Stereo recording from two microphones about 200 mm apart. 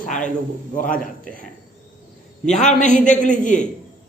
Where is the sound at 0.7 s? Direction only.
40° left (ahead or behind).